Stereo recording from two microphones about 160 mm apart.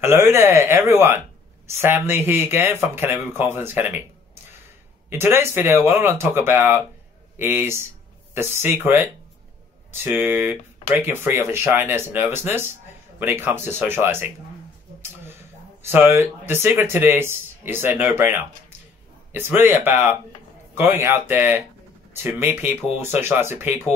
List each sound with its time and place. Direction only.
0.0 s speech: 15° right (ahead or behind)
5.1 s speech: 15° right (ahead or behind)
15.8 s speech: 15° right (ahead or behind)